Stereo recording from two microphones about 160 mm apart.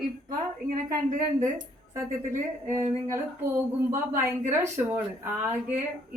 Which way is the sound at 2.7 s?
20° right (ahead or behind).